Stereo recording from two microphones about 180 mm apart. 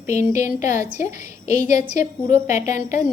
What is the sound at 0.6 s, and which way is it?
A woman's voice, 45° left (ahead or behind).